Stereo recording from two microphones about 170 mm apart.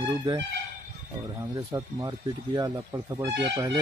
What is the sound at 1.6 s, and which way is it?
Speech, 20° right (ahead or behind).